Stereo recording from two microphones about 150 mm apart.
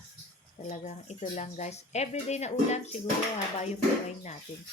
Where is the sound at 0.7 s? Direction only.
55° left (ahead or behind).